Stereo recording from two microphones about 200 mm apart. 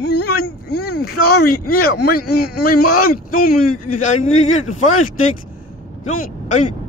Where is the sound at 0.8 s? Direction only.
90° left.